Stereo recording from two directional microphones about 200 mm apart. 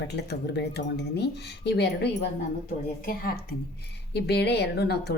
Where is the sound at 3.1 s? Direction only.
50° left (ahead or behind).